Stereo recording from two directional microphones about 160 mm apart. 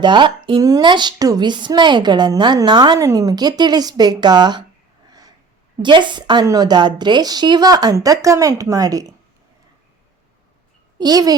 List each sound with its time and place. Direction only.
0.0 s a woman's voice: 30° right (ahead or behind)
5.0 s snort: 25° right (ahead or behind)
5.8 s a woman's voice: 30° right (ahead or behind)
10.9 s speech: 25° right (ahead or behind)